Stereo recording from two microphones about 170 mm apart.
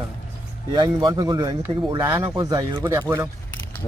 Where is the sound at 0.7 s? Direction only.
25° right (ahead or behind).